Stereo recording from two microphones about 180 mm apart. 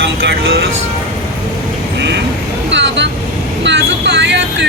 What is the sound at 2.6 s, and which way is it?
Vehicle, 80° right.